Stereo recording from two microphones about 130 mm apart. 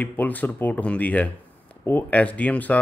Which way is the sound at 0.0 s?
15° left (ahead or behind).